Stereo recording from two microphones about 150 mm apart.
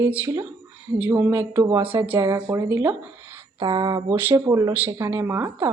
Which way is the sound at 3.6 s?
30° right (ahead or behind).